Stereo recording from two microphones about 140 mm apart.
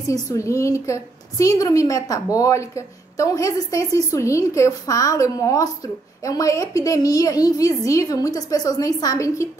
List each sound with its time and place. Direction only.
0.1 s a woman's voice: 25° left (ahead or behind)